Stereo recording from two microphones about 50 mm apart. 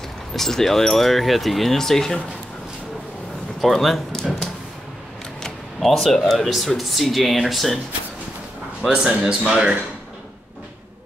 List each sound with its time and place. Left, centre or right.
0.3 s speech: centre
3.6 s speech: centre
5.8 s speech: centre
8.9 s a man's voice: centre